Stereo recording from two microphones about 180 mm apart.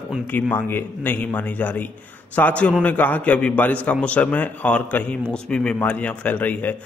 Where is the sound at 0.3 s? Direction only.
10° left (ahead or behind).